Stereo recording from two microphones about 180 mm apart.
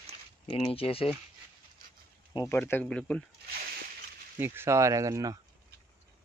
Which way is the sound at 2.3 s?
15° left (ahead or behind).